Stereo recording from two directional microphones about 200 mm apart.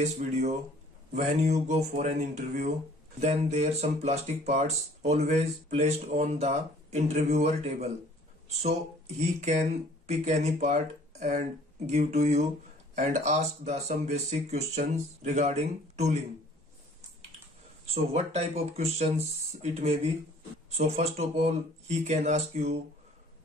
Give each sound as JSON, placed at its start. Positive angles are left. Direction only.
{"t": 0.0, "sound": "speech", "side_deg": -35}
{"t": 17.8, "sound": "speech", "side_deg": -30}